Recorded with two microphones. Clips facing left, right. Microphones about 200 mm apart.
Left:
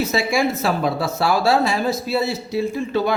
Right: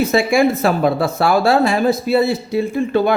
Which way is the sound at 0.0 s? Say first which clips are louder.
Right 6 dB; 55° right (ahead or behind).